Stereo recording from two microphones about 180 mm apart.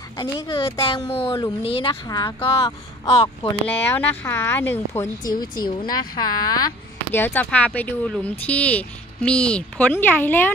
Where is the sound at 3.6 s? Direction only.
10° left (ahead or behind).